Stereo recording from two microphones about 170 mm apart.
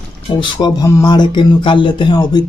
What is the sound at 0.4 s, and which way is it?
Speech, 25° left (ahead or behind).